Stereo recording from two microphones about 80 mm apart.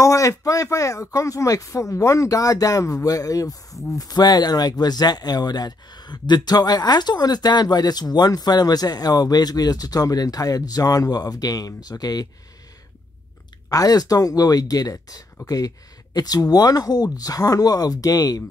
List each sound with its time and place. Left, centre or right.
0.0 s speech: left
13.7 s speech: left